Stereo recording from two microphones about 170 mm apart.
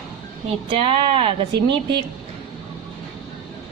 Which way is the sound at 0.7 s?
30° right (ahead or behind).